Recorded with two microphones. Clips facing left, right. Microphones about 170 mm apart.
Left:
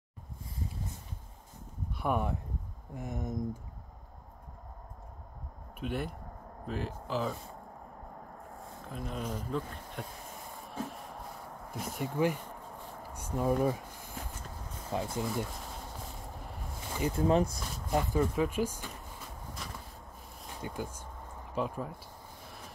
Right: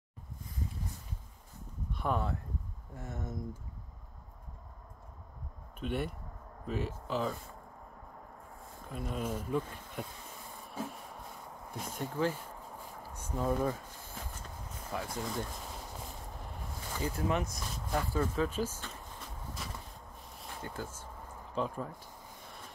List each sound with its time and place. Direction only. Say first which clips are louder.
1.9 s a sound: left 2 dB; 10° left (ahead or behind)
2.9 s speech: left 5 dB; 15° left (ahead or behind)
5.8 s speech: even; centre (ahead or behind)
8.8 s speech: right 1 dB; 5° right (ahead or behind)
11.7 s speech: left 3 dB; 10° left (ahead or behind)
13.1 s a sound: left 3 dB; 10° left (ahead or behind)
14.9 s speech: left 4 dB; 25° left (ahead or behind)
17.1 s speech: left 7 dB; 30° left (ahead or behind)
17.9 s speech: left 3 dB; 15° left (ahead or behind)
19.6 s a sound: even; 5° right (ahead or behind)
20.6 s speech: left 4 dB; 15° left (ahead or behind)